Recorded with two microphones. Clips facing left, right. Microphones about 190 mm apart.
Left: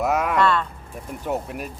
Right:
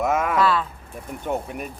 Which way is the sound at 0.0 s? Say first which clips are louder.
Even; centre (ahead or behind).